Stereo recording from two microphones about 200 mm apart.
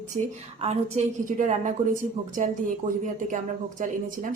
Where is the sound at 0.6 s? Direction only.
35° right (ahead or behind).